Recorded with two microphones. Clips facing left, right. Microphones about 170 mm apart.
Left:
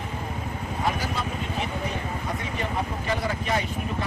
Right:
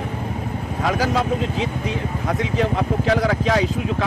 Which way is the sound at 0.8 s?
90° right.